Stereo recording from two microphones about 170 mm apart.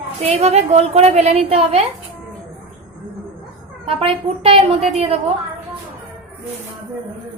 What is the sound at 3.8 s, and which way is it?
Speech, 35° right (ahead or behind).